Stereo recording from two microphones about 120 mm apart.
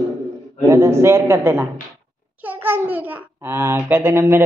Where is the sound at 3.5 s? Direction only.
20° right (ahead or behind).